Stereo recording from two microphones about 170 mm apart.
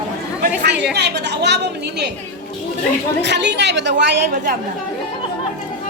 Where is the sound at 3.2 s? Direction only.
90° right.